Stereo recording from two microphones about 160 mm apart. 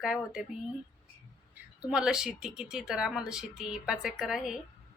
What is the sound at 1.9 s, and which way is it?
Speech, 5° right (ahead or behind).